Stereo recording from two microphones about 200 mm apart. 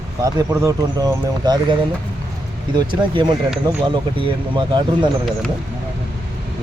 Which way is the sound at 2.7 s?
25° right (ahead or behind).